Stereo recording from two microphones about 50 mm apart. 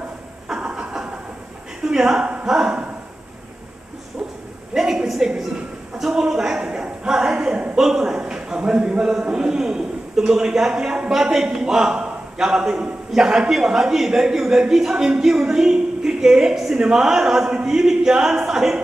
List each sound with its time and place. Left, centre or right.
0.5 s vehicle: centre
1.9 s speech: centre
4.7 s speech: centre
6.6 s a sound: centre
7.7 s a man's voice: centre